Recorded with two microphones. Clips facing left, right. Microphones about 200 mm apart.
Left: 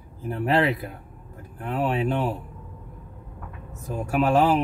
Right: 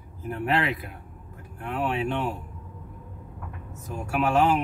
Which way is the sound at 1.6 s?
35° left (ahead or behind).